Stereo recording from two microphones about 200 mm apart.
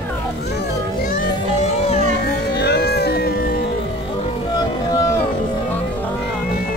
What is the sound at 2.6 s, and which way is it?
Music, 55° left (ahead or behind).